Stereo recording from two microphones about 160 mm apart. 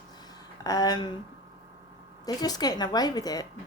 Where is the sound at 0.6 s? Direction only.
25° left (ahead or behind).